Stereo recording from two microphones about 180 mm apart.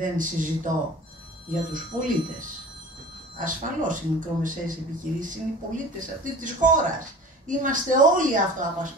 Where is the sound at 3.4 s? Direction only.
45° right (ahead or behind).